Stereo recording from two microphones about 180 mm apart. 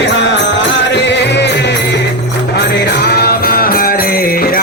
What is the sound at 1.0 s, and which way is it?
Music, 75° left (ahead or behind).